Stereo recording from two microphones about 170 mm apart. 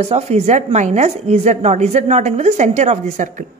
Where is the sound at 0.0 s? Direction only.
40° right (ahead or behind).